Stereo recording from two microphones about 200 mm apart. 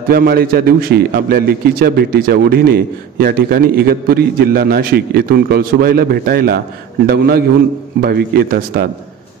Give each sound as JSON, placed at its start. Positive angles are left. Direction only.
{"t": 0.1, "sound": "a man's voice", "side_deg": -50}